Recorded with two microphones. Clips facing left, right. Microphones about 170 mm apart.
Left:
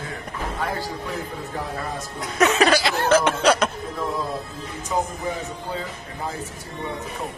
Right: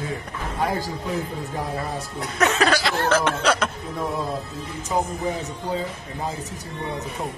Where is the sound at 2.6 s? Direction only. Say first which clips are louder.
Left 2 dB; 15° left (ahead or behind).